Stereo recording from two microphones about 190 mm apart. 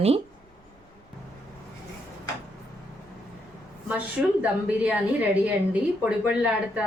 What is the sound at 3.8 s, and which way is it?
A woman's voice, 5° right (ahead or behind).